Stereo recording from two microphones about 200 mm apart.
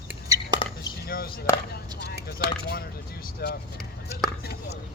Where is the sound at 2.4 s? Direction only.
50° left (ahead or behind).